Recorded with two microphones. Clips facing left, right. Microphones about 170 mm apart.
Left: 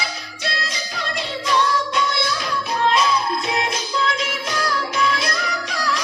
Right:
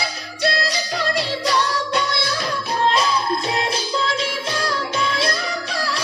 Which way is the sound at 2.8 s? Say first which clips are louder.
Left 1 dB; 35° right (ahead or behind).